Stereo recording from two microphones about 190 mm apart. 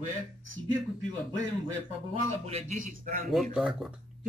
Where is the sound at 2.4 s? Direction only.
40° right (ahead or behind).